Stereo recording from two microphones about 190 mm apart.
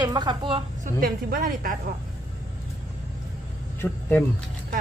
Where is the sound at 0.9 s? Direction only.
50° right (ahead or behind).